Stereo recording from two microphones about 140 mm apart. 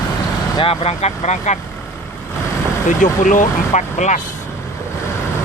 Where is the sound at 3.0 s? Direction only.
65° left (ahead or behind).